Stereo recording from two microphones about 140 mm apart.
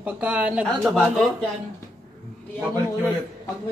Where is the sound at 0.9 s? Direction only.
5° left (ahead or behind).